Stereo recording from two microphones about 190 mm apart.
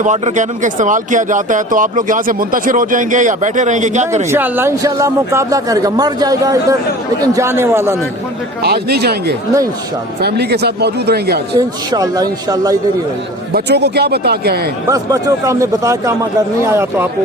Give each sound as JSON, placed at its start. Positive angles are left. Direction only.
{"t": 0.0, "sound": "speech", "side_deg": -40}
{"t": 4.3, "sound": "a man's voice", "side_deg": -10}
{"t": 8.6, "sound": "speech", "side_deg": -55}
{"t": 11.5, "sound": "speech", "side_deg": -20}
{"t": 13.5, "sound": "speech", "side_deg": -60}
{"t": 14.8, "sound": "a man's voice", "side_deg": -15}